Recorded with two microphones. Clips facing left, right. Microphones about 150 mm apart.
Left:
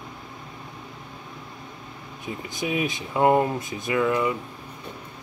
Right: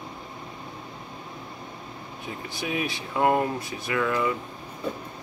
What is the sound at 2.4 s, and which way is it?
Speech, 20° left (ahead or behind).